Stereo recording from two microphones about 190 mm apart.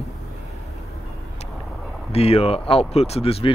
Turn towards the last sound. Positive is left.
turn(degrees=30)  # may be behind; listen again after turning